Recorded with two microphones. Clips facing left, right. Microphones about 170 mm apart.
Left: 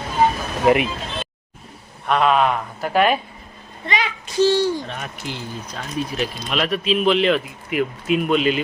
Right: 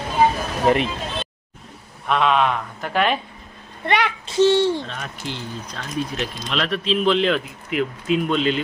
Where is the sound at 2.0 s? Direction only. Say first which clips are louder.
Left 2 dB; 5° left (ahead or behind).